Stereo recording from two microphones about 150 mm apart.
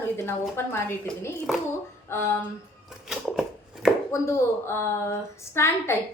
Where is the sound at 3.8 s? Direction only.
5° right (ahead or behind).